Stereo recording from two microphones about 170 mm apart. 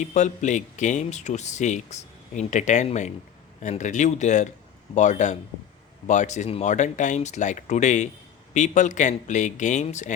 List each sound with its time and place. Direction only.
0.0 s speech: 45° left (ahead or behind)